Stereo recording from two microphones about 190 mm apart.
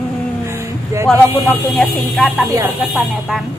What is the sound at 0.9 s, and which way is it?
Speech, 15° right (ahead or behind).